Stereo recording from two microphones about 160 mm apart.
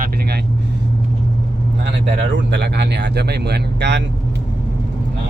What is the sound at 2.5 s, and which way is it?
Speech, 90° right.